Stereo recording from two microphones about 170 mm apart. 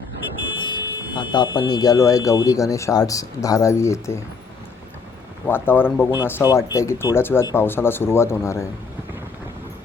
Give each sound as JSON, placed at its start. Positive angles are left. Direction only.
{"t": 0.5, "sound": "a sound", "side_deg": 25}
{"t": 1.5, "sound": "speech", "side_deg": 25}
{"t": 5.5, "sound": "speech", "side_deg": 10}